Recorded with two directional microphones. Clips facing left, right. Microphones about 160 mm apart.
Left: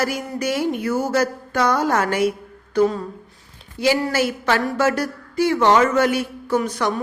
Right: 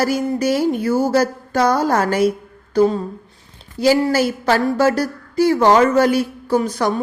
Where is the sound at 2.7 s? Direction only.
30° right (ahead or behind).